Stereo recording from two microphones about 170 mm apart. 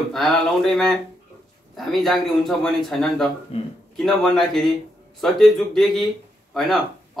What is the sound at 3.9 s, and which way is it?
Speech, centre (ahead or behind).